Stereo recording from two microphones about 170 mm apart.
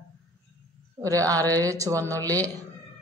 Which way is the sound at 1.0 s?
20° right (ahead or behind).